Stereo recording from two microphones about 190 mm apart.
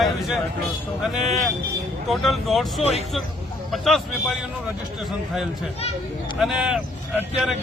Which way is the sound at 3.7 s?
Centre (ahead or behind).